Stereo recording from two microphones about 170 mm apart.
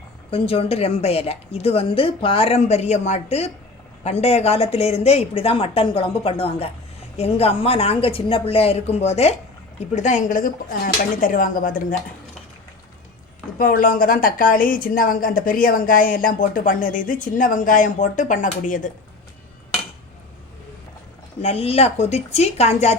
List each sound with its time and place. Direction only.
0.3 s a woman's voice: 35° left (ahead or behind); by 11.9 s 50° left (ahead or behind)
13.6 s speech: 55° left (ahead or behind)
21.4 s a woman's voice: 35° left (ahead or behind)